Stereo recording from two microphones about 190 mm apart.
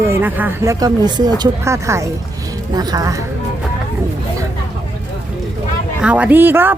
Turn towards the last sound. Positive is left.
turn(degrees=-10)  # may be behind; listen again after turning